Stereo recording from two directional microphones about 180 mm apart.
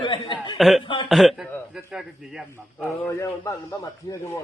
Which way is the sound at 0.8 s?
25° left (ahead or behind).